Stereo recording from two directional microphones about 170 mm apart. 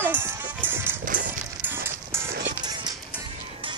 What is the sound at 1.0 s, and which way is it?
Music, 50° right (ahead or behind).